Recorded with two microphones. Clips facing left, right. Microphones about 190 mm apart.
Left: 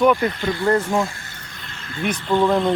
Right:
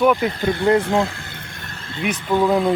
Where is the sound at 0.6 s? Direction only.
15° right (ahead or behind).